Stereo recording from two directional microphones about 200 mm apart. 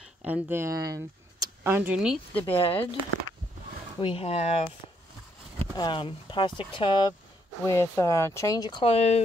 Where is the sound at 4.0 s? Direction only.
25° left (ahead or behind).